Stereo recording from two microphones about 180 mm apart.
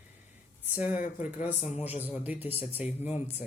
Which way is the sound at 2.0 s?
10° right (ahead or behind).